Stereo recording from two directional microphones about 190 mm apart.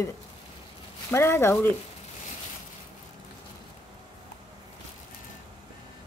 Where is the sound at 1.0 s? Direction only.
10° left (ahead or behind).